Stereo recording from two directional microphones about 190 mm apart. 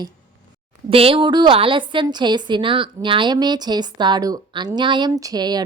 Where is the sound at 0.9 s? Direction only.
30° right (ahead or behind).